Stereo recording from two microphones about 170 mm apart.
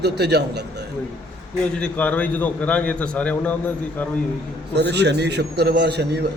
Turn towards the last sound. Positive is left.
turn(degrees=-75)  # may be behind; listen again after turning